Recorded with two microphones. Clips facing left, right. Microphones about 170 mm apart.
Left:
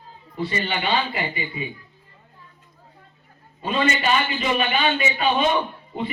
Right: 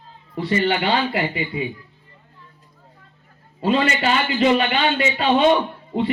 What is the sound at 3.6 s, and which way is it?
A man's voice, 80° right.